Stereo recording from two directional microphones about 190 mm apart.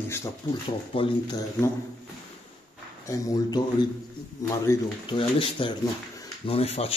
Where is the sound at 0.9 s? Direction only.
30° left (ahead or behind).